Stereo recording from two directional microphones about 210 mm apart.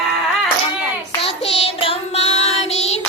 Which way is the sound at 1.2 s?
30° left (ahead or behind).